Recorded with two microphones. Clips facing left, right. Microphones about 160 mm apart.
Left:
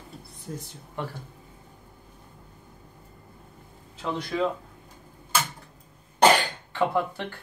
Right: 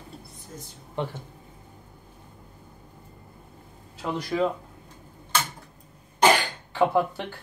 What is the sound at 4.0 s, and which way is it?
Speech, 10° right (ahead or behind).